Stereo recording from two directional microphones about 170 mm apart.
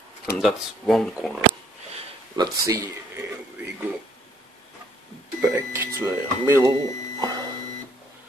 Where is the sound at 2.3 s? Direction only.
20° right (ahead or behind).